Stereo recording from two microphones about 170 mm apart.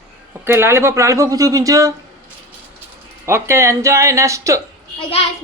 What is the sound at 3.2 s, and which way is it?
Speech, 15° right (ahead or behind).